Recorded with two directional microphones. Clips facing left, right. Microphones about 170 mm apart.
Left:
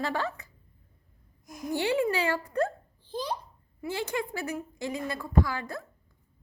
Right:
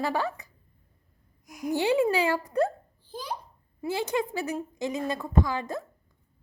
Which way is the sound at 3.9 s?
15° right (ahead or behind).